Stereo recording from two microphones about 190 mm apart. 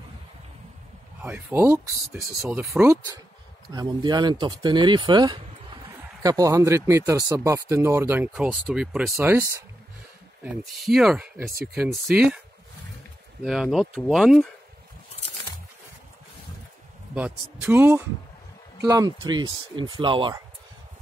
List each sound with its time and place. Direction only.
1.2 s speech: 10° right (ahead or behind)
3.7 s speech: 20° right (ahead or behind); by 9.1 s 5° right (ahead or behind)
9.1 s speech: 15° right (ahead or behind)
10.4 s speech: 5° right (ahead or behind)
13.4 s speech: centre (ahead or behind)
17.1 s speech: 10° right (ahead or behind); by 20.4 s 25° right (ahead or behind)